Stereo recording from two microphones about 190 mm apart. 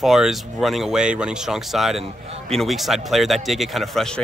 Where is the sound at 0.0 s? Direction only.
Centre (ahead or behind).